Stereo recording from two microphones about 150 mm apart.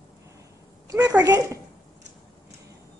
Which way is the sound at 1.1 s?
25° right (ahead or behind).